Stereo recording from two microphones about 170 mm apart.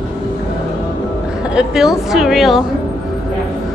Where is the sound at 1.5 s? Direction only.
5° right (ahead or behind).